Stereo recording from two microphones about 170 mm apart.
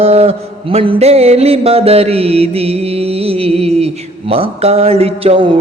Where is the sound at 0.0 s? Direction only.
35° right (ahead or behind).